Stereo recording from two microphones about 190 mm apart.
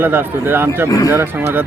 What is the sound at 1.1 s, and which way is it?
Speech, 10° right (ahead or behind).